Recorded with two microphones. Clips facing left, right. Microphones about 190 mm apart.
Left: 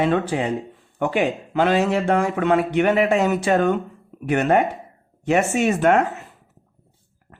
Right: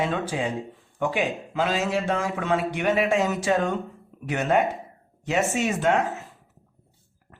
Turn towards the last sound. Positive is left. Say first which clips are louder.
# left 5 dB
turn(degrees=60)  # may be behind; listen again after turning